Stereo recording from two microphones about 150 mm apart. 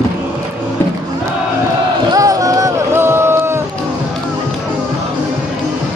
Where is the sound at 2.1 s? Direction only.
25° right (ahead or behind).